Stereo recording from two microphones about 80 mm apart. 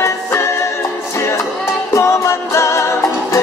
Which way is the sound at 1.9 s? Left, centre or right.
Left.